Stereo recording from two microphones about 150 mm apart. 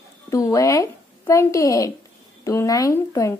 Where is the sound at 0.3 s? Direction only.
20° left (ahead or behind).